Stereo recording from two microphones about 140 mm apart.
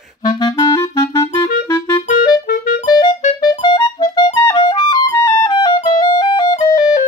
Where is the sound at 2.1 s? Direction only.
70° left (ahead or behind).